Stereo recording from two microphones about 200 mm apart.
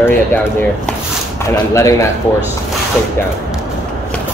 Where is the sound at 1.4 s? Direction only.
15° left (ahead or behind).